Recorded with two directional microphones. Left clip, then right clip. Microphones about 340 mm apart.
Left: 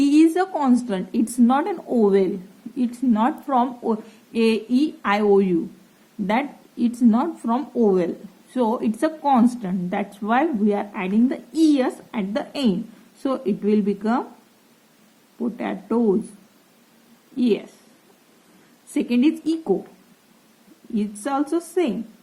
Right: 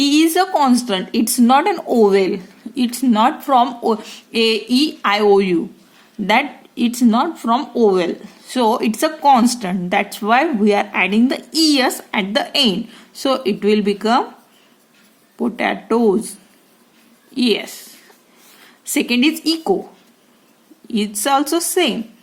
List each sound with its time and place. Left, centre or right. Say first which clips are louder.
0.0 s speech: right 3 dB; centre
15.4 s speech: right 9 dB; centre
17.3 s speech: right 4 dB; centre
18.9 s speech: right 4 dB; centre
20.9 s speech: right 8 dB; centre